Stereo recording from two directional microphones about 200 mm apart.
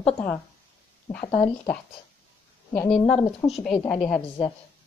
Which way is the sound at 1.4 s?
15° left (ahead or behind).